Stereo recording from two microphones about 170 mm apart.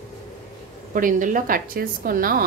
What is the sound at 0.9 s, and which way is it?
A woman's voice, 55° right (ahead or behind).